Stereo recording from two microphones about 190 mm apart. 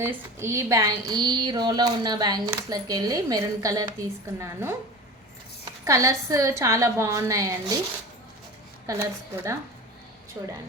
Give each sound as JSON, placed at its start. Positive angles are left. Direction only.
{"t": 0.0, "sound": "a woman's voice", "side_deg": -15}
{"t": 5.8, "sound": "a woman's voice", "side_deg": -15}
{"t": 8.9, "sound": "a woman's voice", "side_deg": -15}